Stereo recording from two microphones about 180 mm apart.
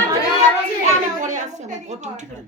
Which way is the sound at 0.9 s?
45° right (ahead or behind).